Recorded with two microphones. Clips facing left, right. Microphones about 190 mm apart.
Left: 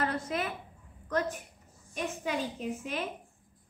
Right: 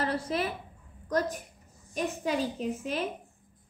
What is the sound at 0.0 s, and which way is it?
A woman's voice, 30° right (ahead or behind).